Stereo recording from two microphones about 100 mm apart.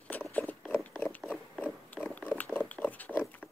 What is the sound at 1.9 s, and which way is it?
Pig, 15° left (ahead or behind).